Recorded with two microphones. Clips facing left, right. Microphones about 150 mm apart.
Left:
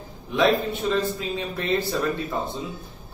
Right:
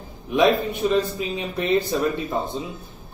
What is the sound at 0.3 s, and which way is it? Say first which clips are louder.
A man's voice: right 2 dB; 15° right (ahead or behind).